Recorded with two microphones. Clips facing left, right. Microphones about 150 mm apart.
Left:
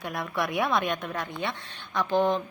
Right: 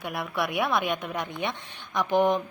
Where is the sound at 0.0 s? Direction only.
5° right (ahead or behind).